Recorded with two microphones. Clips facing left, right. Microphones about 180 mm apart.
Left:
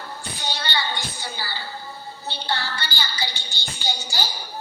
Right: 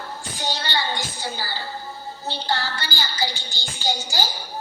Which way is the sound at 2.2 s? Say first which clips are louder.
Right 2 dB; 45° right (ahead or behind).